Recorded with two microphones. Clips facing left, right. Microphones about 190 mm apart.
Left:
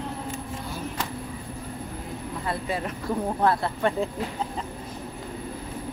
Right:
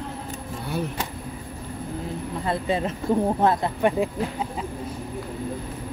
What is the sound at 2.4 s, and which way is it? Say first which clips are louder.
A woman's voice: right 5 dB; 25° right (ahead or behind).